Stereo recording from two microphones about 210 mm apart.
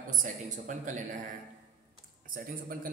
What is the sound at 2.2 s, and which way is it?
Speech, 40° right (ahead or behind).